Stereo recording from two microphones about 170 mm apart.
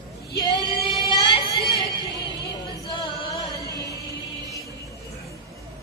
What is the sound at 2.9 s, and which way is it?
Singing, 30° left (ahead or behind).